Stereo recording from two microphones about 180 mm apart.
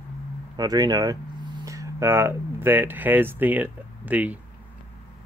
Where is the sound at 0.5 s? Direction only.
20° right (ahead or behind).